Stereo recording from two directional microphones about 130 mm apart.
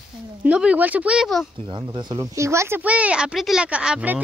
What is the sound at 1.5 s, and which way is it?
Speech, 40° right (ahead or behind).